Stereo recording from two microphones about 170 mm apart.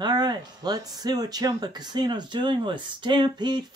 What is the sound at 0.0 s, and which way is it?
Speech, 25° right (ahead or behind).